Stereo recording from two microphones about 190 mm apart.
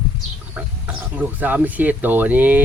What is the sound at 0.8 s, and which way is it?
Speech, 10° right (ahead or behind).